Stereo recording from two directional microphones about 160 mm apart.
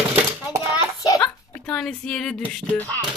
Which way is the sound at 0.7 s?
20° left (ahead or behind).